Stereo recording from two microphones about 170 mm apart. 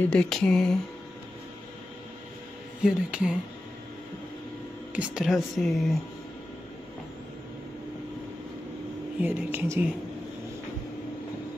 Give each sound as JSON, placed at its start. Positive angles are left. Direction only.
{"t": 0.1, "sound": "speech", "side_deg": 5}
{"t": 2.8, "sound": "speech", "side_deg": -5}
{"t": 4.9, "sound": "speech", "side_deg": -5}
{"t": 9.2, "sound": "a woman's voice", "side_deg": -10}